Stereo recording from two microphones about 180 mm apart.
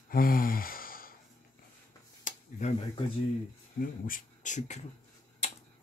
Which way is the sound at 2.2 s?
40° left (ahead or behind).